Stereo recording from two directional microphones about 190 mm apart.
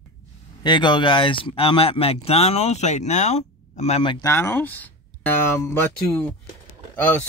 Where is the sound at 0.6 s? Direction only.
25° left (ahead or behind).